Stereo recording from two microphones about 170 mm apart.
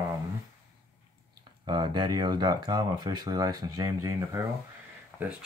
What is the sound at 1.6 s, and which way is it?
Speech, 25° right (ahead or behind).